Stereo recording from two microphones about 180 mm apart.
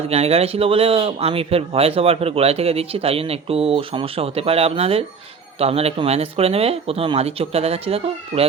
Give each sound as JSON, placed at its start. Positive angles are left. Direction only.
{"t": 0.1, "sound": "speech", "side_deg": -35}